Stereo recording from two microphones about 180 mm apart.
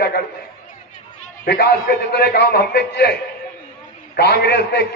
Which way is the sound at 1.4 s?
60° left (ahead or behind).